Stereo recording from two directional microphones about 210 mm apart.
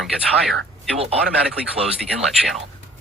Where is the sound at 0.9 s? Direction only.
30° right (ahead or behind).